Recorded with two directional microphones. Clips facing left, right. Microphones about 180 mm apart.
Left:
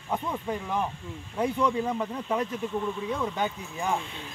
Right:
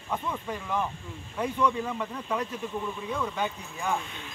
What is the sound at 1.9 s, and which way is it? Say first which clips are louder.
Speech: left 3 dB; 30° left (ahead or behind).